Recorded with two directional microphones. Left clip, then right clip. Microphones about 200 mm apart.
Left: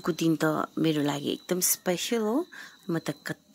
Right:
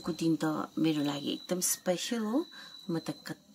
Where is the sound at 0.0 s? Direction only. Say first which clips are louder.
Left 5 dB; 20° left (ahead or behind).